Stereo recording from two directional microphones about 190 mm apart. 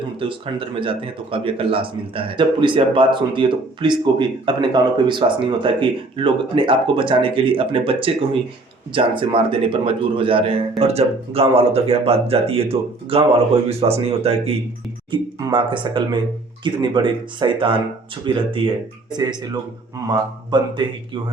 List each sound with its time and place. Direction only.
0.2 s a man's voice: 25° right (ahead or behind)